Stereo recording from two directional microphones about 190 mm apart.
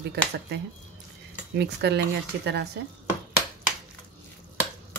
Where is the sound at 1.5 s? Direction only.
65° right (ahead or behind).